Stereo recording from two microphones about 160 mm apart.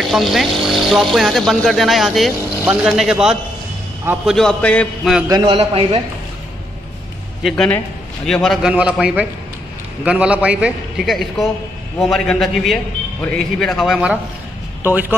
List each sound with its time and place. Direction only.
0.0 s speech: centre (ahead or behind)
5.3 s a man's voice: 30° right (ahead or behind)
7.4 s a man's voice: 5° left (ahead or behind); by 15.1 s 10° right (ahead or behind)